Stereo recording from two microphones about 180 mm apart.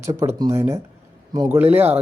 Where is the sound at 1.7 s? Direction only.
10° right (ahead or behind).